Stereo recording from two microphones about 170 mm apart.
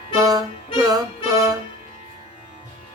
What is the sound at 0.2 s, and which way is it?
Music, 20° right (ahead or behind).